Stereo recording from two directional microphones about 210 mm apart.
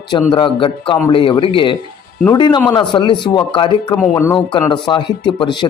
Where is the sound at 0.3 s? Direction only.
25° left (ahead or behind).